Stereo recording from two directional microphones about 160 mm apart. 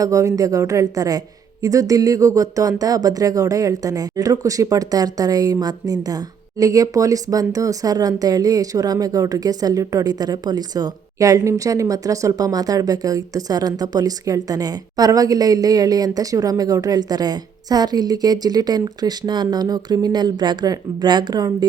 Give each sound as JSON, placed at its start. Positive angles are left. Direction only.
{"t": 0.0, "sound": "speech", "side_deg": -20}